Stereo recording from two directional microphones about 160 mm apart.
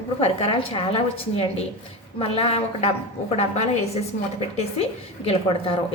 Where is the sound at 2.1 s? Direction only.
35° left (ahead or behind).